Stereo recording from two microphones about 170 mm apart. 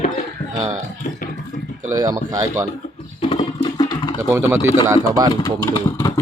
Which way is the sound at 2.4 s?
20° right (ahead or behind).